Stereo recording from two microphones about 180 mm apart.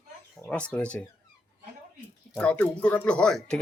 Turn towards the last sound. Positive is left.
turn(degrees=5)  # may be behind; listen again after turning